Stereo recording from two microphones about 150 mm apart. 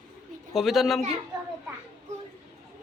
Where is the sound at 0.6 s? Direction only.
Centre (ahead or behind).